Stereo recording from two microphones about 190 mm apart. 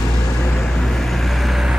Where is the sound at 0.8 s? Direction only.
Centre (ahead or behind).